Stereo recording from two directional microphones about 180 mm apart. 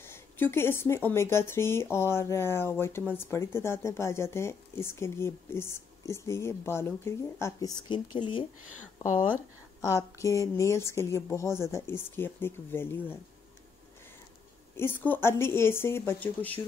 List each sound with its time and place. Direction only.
0.0 s speech: 15° left (ahead or behind)
7.9 s speech: 25° left (ahead or behind)
9.8 s speech: 15° left (ahead or behind)
14.8 s speech: 10° left (ahead or behind)